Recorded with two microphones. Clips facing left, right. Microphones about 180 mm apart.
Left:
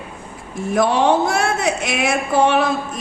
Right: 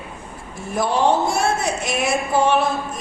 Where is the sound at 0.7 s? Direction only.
75° left (ahead or behind).